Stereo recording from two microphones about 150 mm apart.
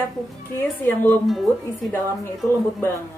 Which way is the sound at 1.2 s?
Centre (ahead or behind).